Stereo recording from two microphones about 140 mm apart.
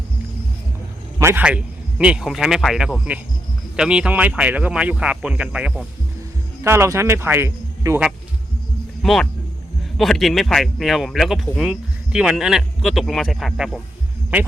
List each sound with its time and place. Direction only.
1.4 s speech: 10° right (ahead or behind)
6.7 s speech: 20° right (ahead or behind)
9.0 s speech: centre (ahead or behind)
14.3 s speech: 10° right (ahead or behind)